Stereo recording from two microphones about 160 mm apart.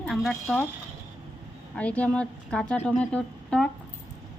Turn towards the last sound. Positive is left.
turn(degrees=5)  # may be behind; listen again after turning